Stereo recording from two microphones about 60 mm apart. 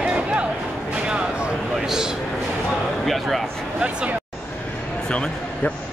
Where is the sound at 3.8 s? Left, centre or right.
Centre.